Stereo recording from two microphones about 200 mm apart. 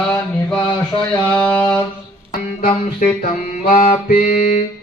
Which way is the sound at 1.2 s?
10° left (ahead or behind).